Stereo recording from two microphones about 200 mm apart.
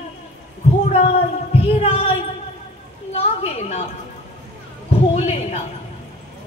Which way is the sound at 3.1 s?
35° left (ahead or behind).